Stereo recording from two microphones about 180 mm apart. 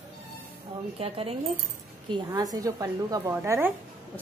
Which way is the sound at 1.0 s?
30° right (ahead or behind).